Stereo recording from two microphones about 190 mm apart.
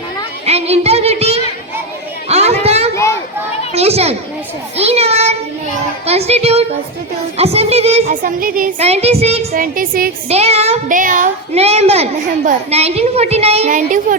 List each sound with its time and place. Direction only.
0.4 s speech: 35° right (ahead or behind)
2.3 s a sound: 35° right (ahead or behind)
2.9 s children playing: 15° left (ahead or behind)
3.8 s speech: 35° right (ahead or behind)
9.5 s speech: 45° right (ahead or behind)
10.2 s speech: 35° right (ahead or behind)